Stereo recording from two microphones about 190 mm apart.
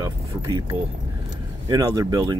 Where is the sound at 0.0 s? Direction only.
20° right (ahead or behind).